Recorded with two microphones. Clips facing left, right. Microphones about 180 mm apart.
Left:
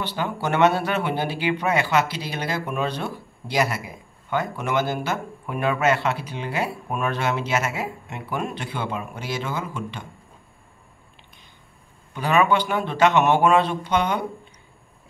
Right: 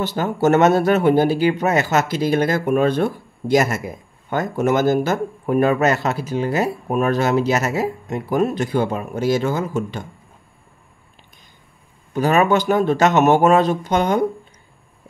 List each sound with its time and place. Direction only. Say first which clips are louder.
0.0 s speech: right 8 dB; 45° right (ahead or behind)
12.1 s speech: right 4 dB; 45° right (ahead or behind)